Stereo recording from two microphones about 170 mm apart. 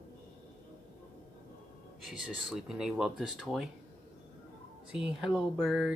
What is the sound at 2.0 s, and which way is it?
Speech, centre (ahead or behind).